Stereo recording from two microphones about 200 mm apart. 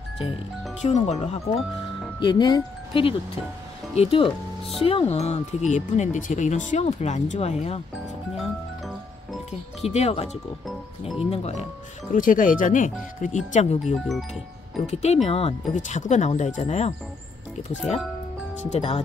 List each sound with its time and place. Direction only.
0.8 s speech: 35° left (ahead or behind)
9.8 s speech: 30° left (ahead or behind)
14.0 s speech: centre (ahead or behind)
14.9 s speech: 35° left (ahead or behind)
18.7 s speech: 35° left (ahead or behind)